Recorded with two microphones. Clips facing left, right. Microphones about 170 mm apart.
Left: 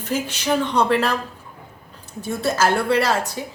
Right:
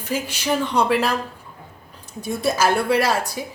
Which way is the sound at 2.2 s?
10° right (ahead or behind).